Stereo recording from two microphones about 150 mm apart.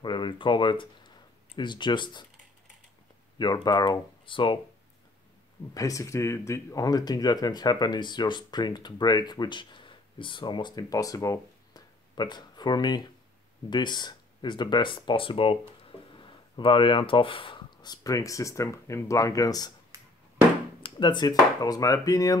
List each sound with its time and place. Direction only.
0.0 s speech: 30° left (ahead or behind)
3.3 s speech: 30° left (ahead or behind)
5.8 s speech: 20° left (ahead or behind)
19.9 s a sound: 20° right (ahead or behind)
20.8 s speech: 30° left (ahead or behind)